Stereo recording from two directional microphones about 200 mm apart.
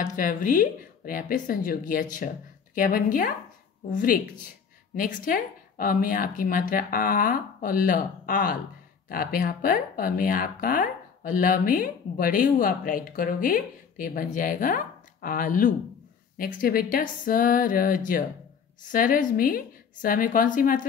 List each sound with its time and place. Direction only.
0.0 s speech: 40° left (ahead or behind)